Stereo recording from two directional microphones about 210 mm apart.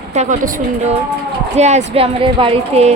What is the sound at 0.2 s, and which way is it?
Speech, 35° right (ahead or behind).